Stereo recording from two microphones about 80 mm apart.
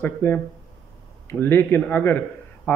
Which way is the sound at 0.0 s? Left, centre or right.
Left.